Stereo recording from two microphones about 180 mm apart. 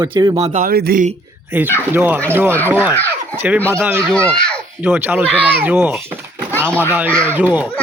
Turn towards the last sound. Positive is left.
turn(degrees=-10)  # may be behind; listen again after turning